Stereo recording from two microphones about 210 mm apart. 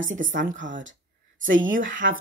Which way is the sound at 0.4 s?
40° right (ahead or behind).